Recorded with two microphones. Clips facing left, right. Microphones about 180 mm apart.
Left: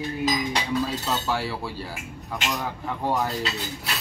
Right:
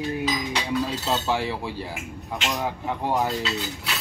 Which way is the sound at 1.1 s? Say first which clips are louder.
Right 2 dB; 20° right (ahead or behind).